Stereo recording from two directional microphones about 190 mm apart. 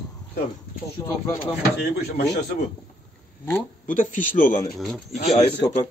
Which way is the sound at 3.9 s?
40° left (ahead or behind).